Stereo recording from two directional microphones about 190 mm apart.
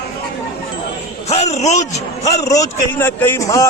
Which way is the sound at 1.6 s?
35° left (ahead or behind).